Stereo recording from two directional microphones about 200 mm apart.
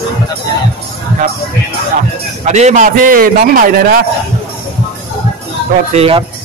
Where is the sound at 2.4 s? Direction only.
35° right (ahead or behind).